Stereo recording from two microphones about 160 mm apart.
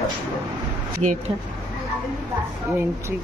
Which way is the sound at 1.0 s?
50° right (ahead or behind).